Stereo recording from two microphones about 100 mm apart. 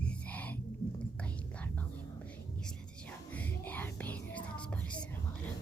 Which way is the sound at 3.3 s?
15° left (ahead or behind).